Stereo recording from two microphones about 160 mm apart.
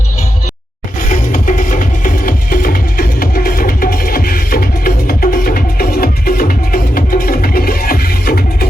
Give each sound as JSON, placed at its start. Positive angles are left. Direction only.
{"t": 1.0, "sound": "music", "side_deg": 55}